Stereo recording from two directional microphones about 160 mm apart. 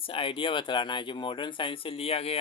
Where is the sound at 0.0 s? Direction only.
35° left (ahead or behind).